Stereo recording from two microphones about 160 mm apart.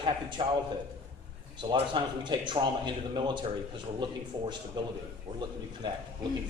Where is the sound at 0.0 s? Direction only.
30° right (ahead or behind).